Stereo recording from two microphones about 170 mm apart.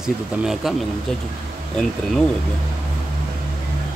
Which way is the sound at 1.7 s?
5° left (ahead or behind).